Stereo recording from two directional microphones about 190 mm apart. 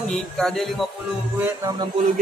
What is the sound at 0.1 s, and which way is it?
Speech, centre (ahead or behind).